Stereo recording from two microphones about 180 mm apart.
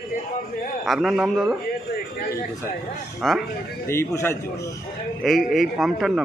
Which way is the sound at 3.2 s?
Centre (ahead or behind).